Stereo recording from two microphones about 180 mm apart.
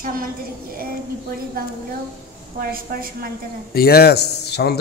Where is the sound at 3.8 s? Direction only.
60° left (ahead or behind).